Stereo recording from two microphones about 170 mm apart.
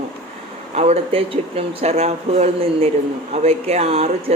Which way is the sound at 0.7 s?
35° right (ahead or behind).